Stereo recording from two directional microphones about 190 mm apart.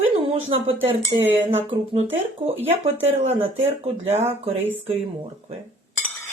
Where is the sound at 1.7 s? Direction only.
30° right (ahead or behind).